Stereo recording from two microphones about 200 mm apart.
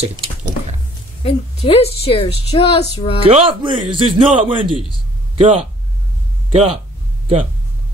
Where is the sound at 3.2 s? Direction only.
30° right (ahead or behind).